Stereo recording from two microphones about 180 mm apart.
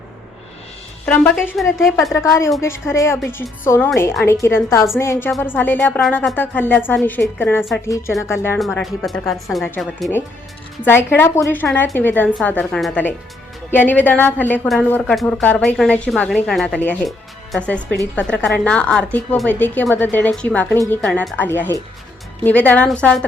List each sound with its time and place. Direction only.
1.0 s speech: 5° left (ahead or behind)
2.1 s a woman's voice: 15° left (ahead or behind)
8.5 s speech: centre (ahead or behind)
11.2 s a woman's voice: 15° left (ahead or behind)